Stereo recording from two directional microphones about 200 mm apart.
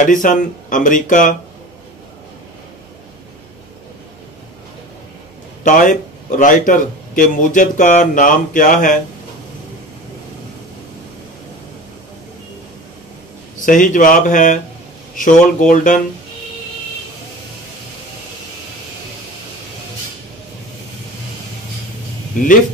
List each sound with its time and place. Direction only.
0.0 s a man's voice: 40° left (ahead or behind)
5.6 s a man's voice: 40° left (ahead or behind)
13.7 s a man's voice: 40° left (ahead or behind)